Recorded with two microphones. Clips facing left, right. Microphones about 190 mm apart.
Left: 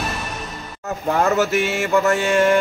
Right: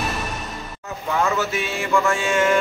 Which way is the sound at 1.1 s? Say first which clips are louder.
Left 4 dB; 45° left (ahead or behind).